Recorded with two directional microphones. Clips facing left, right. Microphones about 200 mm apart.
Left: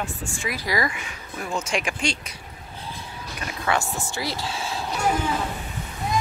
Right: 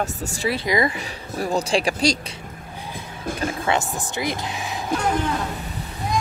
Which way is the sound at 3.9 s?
20° right (ahead or behind).